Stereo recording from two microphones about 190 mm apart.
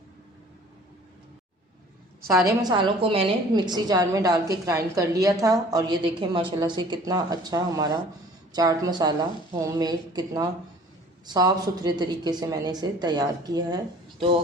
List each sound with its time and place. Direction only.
2.6 s a woman's voice: 25° right (ahead or behind)